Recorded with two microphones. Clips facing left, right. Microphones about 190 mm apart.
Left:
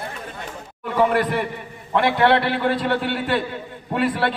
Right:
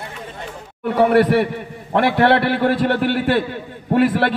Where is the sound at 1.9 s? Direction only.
55° right (ahead or behind).